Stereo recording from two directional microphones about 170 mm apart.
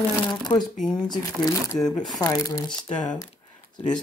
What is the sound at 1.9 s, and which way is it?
Speech, 5° left (ahead or behind).